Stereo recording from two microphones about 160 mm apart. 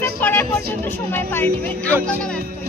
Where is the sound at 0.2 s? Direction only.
10° left (ahead or behind).